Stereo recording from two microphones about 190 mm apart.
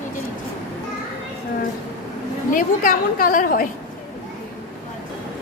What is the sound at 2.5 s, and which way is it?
A woman's voice, 45° left (ahead or behind).